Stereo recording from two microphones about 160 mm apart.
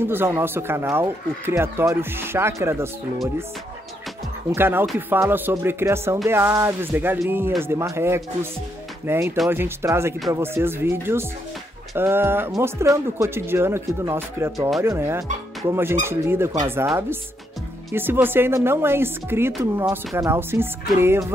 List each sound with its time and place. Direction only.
0.0 s speech: 15° right (ahead or behind)
4.6 s speech: 15° right (ahead or behind)